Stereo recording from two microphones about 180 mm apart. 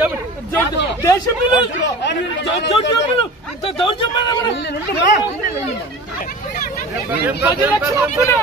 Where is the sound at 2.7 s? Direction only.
30° left (ahead or behind).